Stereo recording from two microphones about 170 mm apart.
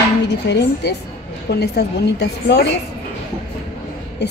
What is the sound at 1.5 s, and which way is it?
A woman's voice, 75° left (ahead or behind).